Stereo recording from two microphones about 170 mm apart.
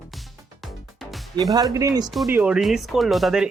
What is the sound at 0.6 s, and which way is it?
Music, centre (ahead or behind).